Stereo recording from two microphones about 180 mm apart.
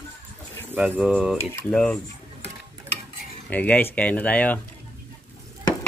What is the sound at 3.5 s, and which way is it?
Speech, 10° left (ahead or behind).